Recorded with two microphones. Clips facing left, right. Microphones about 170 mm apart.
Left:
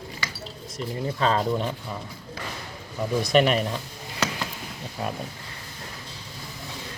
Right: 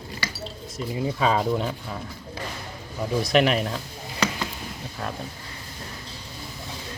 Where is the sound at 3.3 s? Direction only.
Centre (ahead or behind).